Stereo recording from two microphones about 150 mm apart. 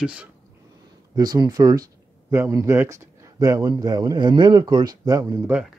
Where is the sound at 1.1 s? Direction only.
25° right (ahead or behind).